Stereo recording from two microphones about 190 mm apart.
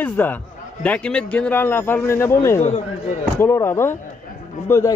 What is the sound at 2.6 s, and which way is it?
Speech, 35° left (ahead or behind).